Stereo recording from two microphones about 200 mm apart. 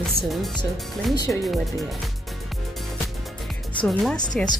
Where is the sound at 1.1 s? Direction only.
20° left (ahead or behind).